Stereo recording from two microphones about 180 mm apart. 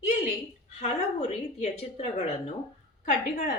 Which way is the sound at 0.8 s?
40° left (ahead or behind).